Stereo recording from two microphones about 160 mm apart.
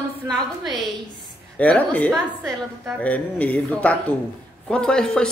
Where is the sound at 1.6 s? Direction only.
10° left (ahead or behind).